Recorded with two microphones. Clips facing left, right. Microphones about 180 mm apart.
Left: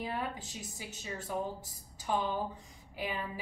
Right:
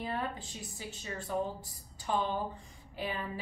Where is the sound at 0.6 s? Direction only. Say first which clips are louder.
Right 1 dB; 15° left (ahead or behind).